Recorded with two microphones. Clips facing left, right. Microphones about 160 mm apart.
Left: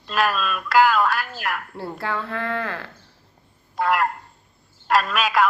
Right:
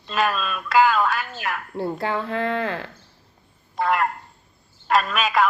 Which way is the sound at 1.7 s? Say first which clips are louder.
Right 3 dB; 20° right (ahead or behind).